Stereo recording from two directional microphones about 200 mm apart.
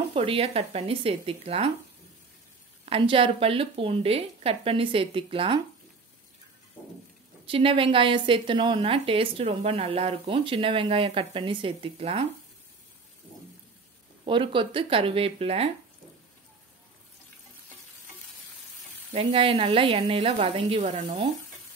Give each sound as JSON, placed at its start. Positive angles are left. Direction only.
{"t": 0.1, "sound": "a woman's voice", "side_deg": -30}
{"t": 2.8, "sound": "a woman's voice", "side_deg": -25}
{"t": 7.4, "sound": "a woman's voice", "side_deg": -25}
{"t": 14.2, "sound": "a woman's voice", "side_deg": -25}
{"t": 19.1, "sound": "a woman's voice", "side_deg": -25}